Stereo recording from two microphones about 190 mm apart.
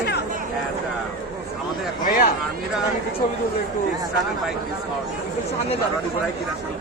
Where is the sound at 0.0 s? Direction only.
60° left (ahead or behind).